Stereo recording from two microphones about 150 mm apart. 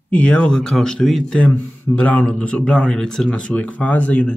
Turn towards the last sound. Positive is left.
turn(degrees=10)  # may be behind; listen again after turning